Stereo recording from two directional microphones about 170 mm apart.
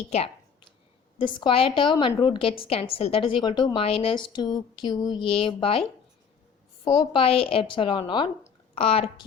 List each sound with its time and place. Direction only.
1.2 s a woman's voice: 30° left (ahead or behind)
6.8 s a woman's voice: 25° left (ahead or behind)